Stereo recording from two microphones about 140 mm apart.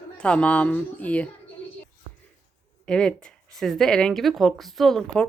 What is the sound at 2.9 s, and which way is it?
Speech, 5° left (ahead or behind).